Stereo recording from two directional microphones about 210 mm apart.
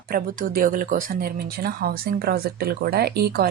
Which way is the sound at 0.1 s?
45° right (ahead or behind).